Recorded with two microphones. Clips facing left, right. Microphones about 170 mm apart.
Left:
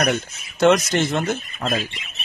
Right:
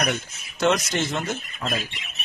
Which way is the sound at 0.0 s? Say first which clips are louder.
Left 5 dB; 55° left (ahead or behind).